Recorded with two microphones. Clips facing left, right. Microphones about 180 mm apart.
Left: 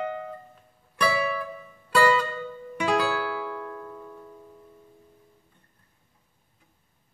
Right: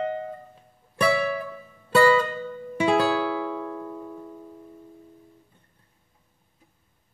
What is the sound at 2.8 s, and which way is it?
Music, 25° right (ahead or behind).